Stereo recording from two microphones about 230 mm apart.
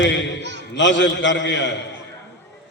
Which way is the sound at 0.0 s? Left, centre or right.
Left.